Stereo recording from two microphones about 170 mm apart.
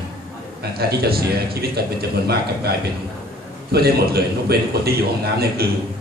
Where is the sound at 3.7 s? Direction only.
70° right (ahead or behind).